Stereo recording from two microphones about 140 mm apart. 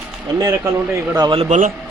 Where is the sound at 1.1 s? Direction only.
30° right (ahead or behind).